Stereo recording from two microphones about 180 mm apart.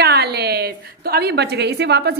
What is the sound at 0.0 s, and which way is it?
A woman's voice, 65° right (ahead or behind).